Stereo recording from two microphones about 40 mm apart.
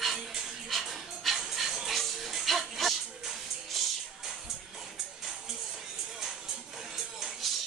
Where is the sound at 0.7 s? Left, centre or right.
Centre.